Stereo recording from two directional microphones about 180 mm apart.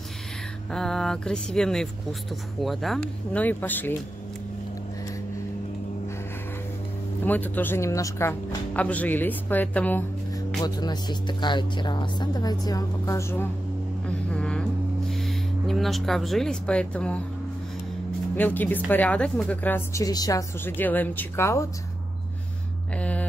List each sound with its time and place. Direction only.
0.7 s speech: 5° left (ahead or behind)
7.2 s a woman's voice: 10° left (ahead or behind)
10.6 s speech: 20° left (ahead or behind)
14.0 s a sound: 5° left (ahead or behind)
18.3 s a woman's voice: 10° left (ahead or behind)
22.9 s speech: 5° left (ahead or behind)